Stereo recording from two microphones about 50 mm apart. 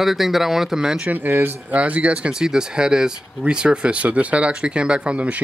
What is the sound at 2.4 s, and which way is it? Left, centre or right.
Speech, centre.